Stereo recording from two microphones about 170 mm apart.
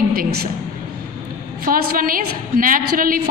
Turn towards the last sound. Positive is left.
turn(degrees=-55)  # may be behind; listen again after turning